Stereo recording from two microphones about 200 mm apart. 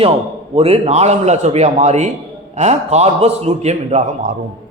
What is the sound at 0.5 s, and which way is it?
A man's voice, 30° right (ahead or behind).